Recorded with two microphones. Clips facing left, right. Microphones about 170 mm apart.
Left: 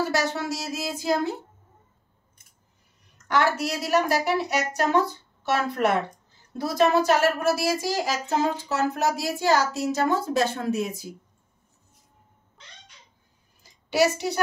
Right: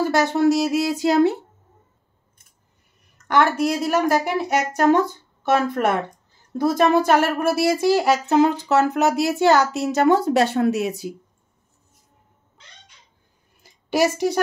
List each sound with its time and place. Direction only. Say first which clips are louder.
0.1 s speech: right 9 dB; 55° right (ahead or behind)
3.3 s a woman's voice: right 5 dB; 55° right (ahead or behind)